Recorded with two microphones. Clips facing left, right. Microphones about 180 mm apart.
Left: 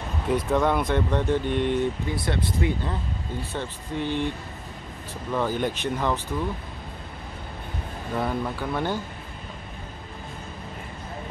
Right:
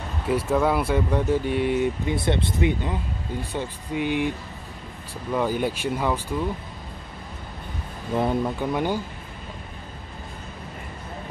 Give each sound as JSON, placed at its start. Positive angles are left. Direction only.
{"t": 0.3, "sound": "speech", "side_deg": -5}
{"t": 2.0, "sound": "speech", "side_deg": -25}
{"t": 5.3, "sound": "speech", "side_deg": -10}
{"t": 8.2, "sound": "speech", "side_deg": -20}